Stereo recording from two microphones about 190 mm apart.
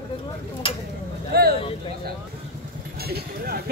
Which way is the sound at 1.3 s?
55° right (ahead or behind).